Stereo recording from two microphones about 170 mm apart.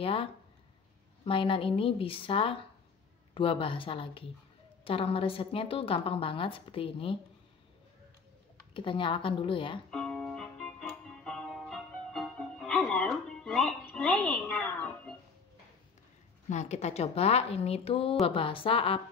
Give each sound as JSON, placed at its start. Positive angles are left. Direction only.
{"t": 0.0, "sound": "a woman's voice", "side_deg": 35}
{"t": 8.7, "sound": "a woman's voice", "side_deg": 30}
{"t": 9.8, "sound": "music", "side_deg": 5}
{"t": 16.4, "sound": "a woman's voice", "side_deg": 40}